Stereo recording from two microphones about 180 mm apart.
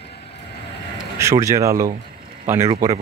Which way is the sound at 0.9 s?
20° right (ahead or behind).